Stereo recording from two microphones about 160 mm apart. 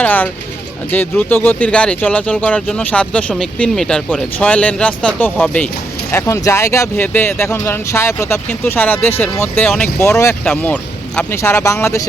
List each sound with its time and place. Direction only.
0.0 s speech: 10° left (ahead or behind)